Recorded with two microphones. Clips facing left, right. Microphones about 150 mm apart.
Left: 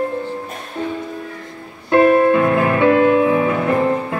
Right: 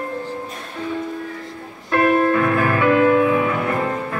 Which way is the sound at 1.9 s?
25° left (ahead or behind).